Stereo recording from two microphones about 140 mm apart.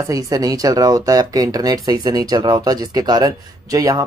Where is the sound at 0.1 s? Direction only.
25° right (ahead or behind).